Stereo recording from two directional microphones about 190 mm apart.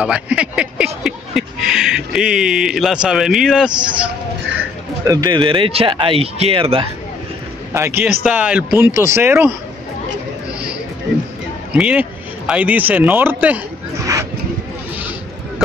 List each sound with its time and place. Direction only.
0.0 s speech: 5° right (ahead or behind)
5.0 s speech: 20° right (ahead or behind)
7.7 s speech: 15° right (ahead or behind)
11.7 s speech: 5° right (ahead or behind)